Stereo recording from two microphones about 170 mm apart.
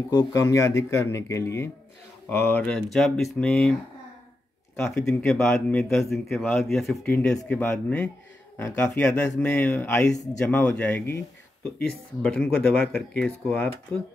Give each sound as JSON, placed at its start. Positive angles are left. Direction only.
{"t": 0.2, "sound": "speech", "side_deg": 20}
{"t": 4.7, "sound": "speech", "side_deg": 5}
{"t": 12.2, "sound": "speech", "side_deg": 5}